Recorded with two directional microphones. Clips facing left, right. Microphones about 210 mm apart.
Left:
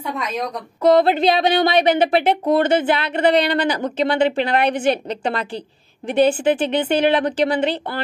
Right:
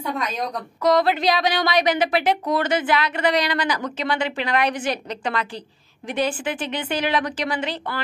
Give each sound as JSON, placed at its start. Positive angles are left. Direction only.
{"t": 0.8, "sound": "speech", "side_deg": 25}